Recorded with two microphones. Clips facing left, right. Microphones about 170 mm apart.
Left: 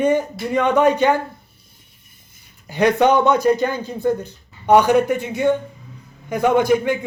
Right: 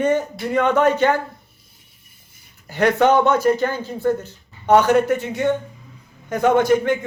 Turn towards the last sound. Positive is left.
turn(degrees=10)  # may be behind; listen again after turning